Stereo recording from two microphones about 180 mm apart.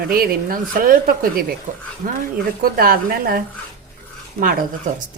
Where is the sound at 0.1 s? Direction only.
55° right (ahead or behind).